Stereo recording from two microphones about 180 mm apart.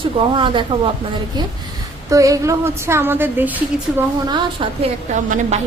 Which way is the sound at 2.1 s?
20° right (ahead or behind).